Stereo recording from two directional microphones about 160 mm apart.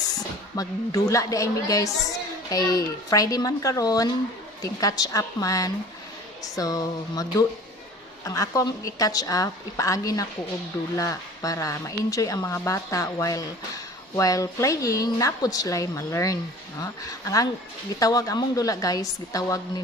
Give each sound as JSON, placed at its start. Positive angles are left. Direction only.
{"t": 0.2, "sound": "a woman's voice", "side_deg": 20}